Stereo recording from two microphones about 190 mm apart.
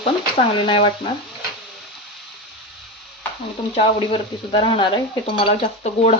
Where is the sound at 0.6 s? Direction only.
25° left (ahead or behind).